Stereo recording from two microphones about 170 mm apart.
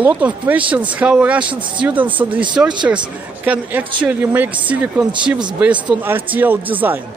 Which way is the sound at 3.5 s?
10° right (ahead or behind).